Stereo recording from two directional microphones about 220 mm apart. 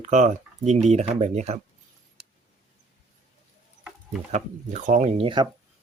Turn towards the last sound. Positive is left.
turn(degrees=-25)  # may be behind; listen again after turning